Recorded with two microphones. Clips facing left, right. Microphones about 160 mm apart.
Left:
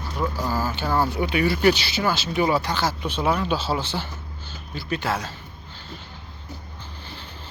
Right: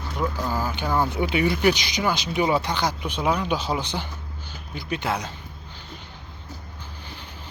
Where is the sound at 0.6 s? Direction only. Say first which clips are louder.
Even; 15° right (ahead or behind).